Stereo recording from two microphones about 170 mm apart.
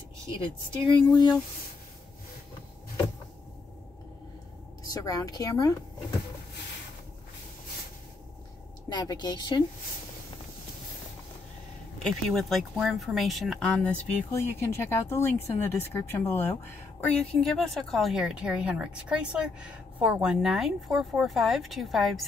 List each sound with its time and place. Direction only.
0.8 s speech: 25° left (ahead or behind)
4.8 s speech: 20° left (ahead or behind)
8.8 s speech: 25° left (ahead or behind)
12.0 s speech: centre (ahead or behind)
14.3 s speech: 15° left (ahead or behind)